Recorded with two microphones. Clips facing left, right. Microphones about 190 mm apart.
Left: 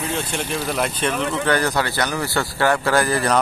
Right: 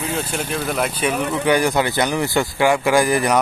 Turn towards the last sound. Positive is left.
turn(degrees=-15)  # may be behind; listen again after turning